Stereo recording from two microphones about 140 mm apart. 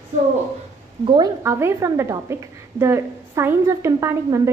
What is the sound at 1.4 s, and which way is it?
A woman's voice, 20° right (ahead or behind).